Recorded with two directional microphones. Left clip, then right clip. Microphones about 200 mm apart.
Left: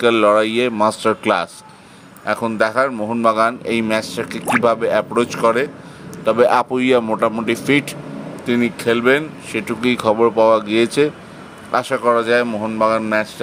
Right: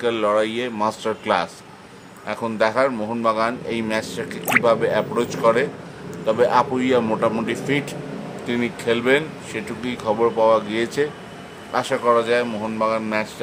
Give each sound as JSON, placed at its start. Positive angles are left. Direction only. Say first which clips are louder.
{"t": 0.0, "sound": "speech", "louder": "left 6 dB", "side_deg": 30}
{"t": 7.0, "sound": "speech", "louder": "left 3 dB", "side_deg": 25}